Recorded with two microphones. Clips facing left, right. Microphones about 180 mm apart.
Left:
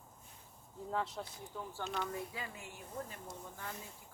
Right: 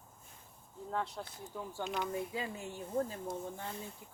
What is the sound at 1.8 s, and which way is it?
Speech, 15° right (ahead or behind).